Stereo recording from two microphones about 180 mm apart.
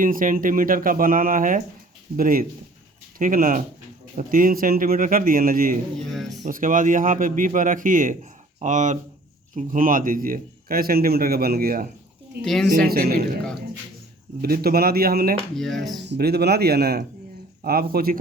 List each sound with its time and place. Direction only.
0.0 s speech: 50° right (ahead or behind)
6.0 s speech: centre (ahead or behind)
6.3 s a man's voice: 45° right (ahead or behind)
12.5 s speech: centre (ahead or behind)
12.7 s a man's voice: 55° right (ahead or behind)
14.4 s a man's voice: 60° right (ahead or behind)
15.5 s speech: centre (ahead or behind)
16.0 s a man's voice: 60° right (ahead or behind)